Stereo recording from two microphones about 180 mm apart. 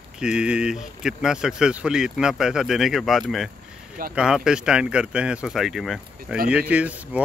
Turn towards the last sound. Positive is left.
turn(degrees=-10)  # may be behind; listen again after turning